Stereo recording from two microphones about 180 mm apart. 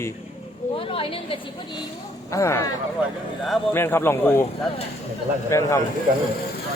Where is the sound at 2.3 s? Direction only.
15° left (ahead or behind).